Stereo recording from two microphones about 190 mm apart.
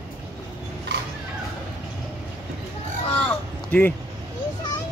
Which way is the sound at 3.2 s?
10° left (ahead or behind).